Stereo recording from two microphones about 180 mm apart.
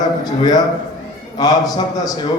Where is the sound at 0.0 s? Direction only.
20° left (ahead or behind).